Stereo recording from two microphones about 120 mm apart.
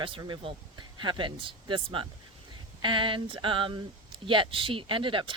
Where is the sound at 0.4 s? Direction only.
40° right (ahead or behind).